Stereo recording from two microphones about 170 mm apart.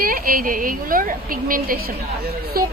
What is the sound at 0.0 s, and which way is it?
Speech, 55° right (ahead or behind).